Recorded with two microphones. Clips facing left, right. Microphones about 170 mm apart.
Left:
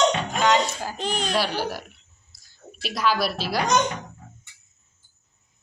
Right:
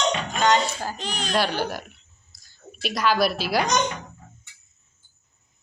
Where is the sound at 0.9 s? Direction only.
50° left (ahead or behind).